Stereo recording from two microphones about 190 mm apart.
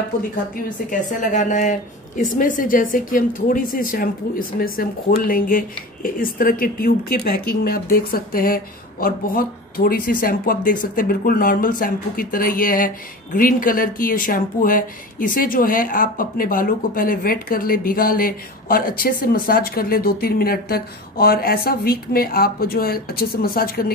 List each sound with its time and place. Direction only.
0.7 s speech: 40° left (ahead or behind)